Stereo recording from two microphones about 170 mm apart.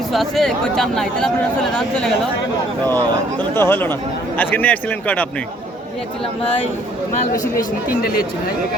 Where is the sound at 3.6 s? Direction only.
10° left (ahead or behind).